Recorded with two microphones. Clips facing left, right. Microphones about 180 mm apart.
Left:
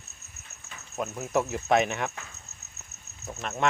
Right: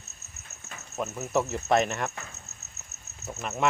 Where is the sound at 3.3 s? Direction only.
5° right (ahead or behind).